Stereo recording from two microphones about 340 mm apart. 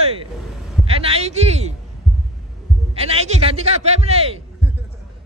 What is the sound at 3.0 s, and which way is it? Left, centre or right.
A man's voice, centre.